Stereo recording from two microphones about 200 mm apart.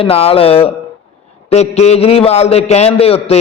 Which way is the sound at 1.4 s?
30° left (ahead or behind).